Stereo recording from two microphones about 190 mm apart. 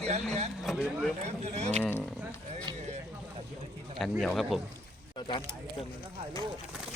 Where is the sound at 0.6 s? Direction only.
5° right (ahead or behind).